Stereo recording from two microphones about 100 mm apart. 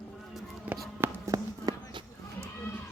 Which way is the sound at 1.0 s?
30° right (ahead or behind).